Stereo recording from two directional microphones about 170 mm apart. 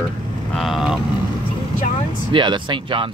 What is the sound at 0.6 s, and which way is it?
Vehicle, centre (ahead or behind).